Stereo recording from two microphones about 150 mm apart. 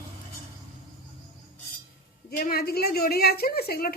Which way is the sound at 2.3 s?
85° left.